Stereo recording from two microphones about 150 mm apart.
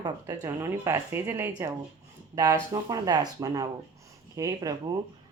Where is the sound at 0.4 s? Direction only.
20° right (ahead or behind).